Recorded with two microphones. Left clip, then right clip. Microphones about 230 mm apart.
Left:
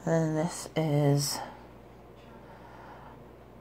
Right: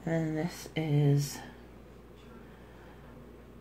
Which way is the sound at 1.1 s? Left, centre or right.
Centre.